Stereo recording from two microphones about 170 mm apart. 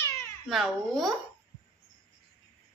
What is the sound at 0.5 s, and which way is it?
Speech, centre (ahead or behind).